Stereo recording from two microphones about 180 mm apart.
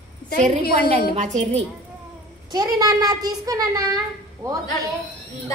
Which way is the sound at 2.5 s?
20° right (ahead or behind).